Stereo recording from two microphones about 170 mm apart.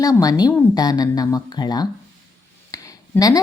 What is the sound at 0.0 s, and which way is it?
A woman's voice, 20° left (ahead or behind).